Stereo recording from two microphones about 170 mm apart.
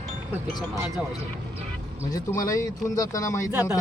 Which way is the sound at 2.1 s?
20° left (ahead or behind).